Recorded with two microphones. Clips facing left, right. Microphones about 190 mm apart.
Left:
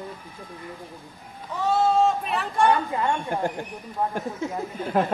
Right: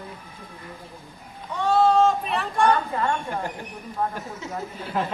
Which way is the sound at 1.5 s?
Centre (ahead or behind).